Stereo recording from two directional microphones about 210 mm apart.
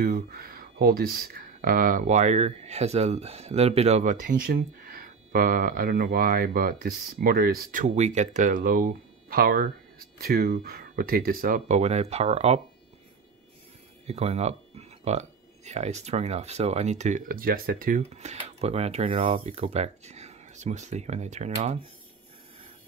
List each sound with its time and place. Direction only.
0.0 s speech: 45° right (ahead or behind)
14.0 s speech: 30° right (ahead or behind)